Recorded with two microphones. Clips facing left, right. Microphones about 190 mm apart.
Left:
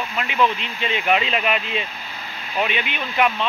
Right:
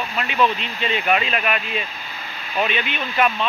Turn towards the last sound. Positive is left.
turn(degrees=15)  # may be behind; listen again after turning